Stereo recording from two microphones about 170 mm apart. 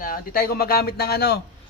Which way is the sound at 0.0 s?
60° left (ahead or behind).